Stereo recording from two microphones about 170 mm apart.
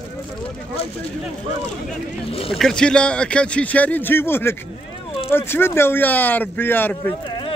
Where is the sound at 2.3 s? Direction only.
35° left (ahead or behind).